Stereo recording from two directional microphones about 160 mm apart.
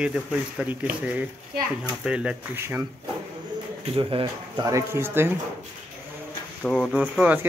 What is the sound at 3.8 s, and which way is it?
Speech, 35° right (ahead or behind).